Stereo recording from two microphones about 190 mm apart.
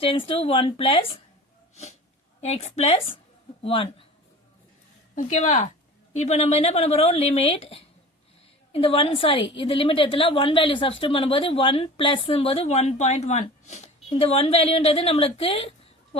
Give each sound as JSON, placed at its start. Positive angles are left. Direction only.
{"t": 0.0, "sound": "a woman's voice", "side_deg": 30}
{"t": 1.7, "sound": "sneeze", "side_deg": 35}
{"t": 2.4, "sound": "a woman's voice", "side_deg": 35}
{"t": 5.1, "sound": "a woman's voice", "side_deg": 40}